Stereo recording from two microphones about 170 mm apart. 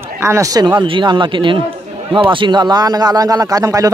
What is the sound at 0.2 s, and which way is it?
A man's voice, 15° right (ahead or behind).